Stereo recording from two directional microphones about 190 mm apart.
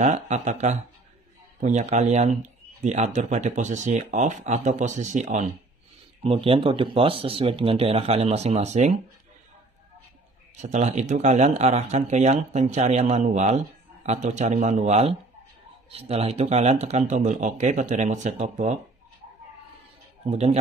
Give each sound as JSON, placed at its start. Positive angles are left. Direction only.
{"t": 0.0, "sound": "speech", "side_deg": -40}
{"t": 10.5, "sound": "speech", "side_deg": -40}
{"t": 20.2, "sound": "speech", "side_deg": -35}